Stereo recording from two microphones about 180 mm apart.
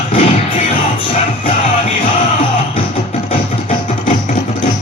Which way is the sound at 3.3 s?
35° left (ahead or behind).